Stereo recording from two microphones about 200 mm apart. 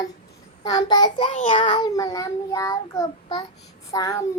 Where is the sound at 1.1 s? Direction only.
40° left (ahead or behind).